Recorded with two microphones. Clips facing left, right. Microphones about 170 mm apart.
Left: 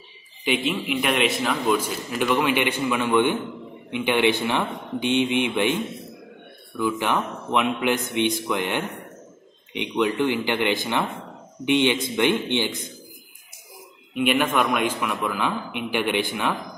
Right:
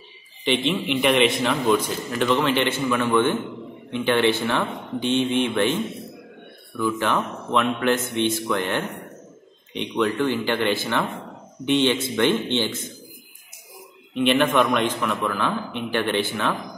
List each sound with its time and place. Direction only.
0.5 s a man's voice: 5° left (ahead or behind)
6.8 s a man's voice: 15° left (ahead or behind)
14.1 s a man's voice: 10° left (ahead or behind)